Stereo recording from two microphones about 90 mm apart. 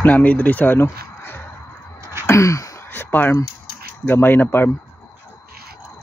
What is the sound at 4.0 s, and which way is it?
Speech, 25° left (ahead or behind).